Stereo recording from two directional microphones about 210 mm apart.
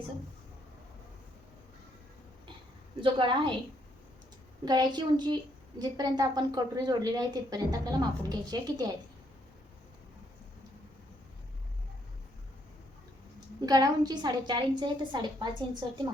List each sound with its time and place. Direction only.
3.0 s speech: 25° right (ahead or behind)
4.6 s speech: 20° right (ahead or behind)
13.6 s speech: 20° right (ahead or behind)